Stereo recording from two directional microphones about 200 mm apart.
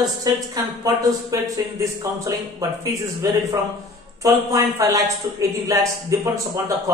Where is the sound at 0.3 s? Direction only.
20° right (ahead or behind).